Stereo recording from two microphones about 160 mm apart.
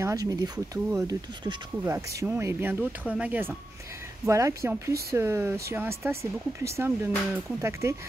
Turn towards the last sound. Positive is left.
turn(degrees=-15)  # may be behind; listen again after turning